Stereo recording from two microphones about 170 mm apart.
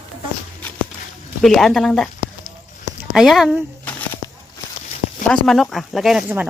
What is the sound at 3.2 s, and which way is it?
Speech, centre (ahead or behind).